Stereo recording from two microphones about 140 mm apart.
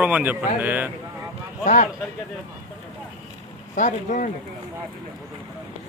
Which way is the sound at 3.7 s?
65° left (ahead or behind).